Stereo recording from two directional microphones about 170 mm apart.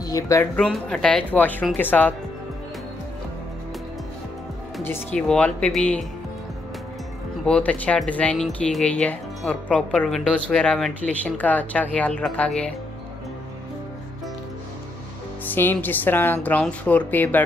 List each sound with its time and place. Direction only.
0.0 s speech: 20° left (ahead or behind)
0.6 s speech: 5° left (ahead or behind)
4.8 s speech: 10° left (ahead or behind)
7.4 s speech: 5° left (ahead or behind)
15.4 s speech: 10° left (ahead or behind)